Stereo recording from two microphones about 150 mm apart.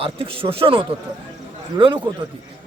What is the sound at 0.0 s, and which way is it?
Speech, 40° right (ahead or behind).